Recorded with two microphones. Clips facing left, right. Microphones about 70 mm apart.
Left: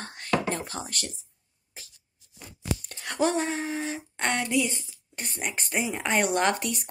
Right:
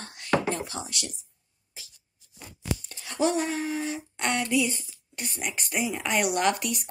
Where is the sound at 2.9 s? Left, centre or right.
Left.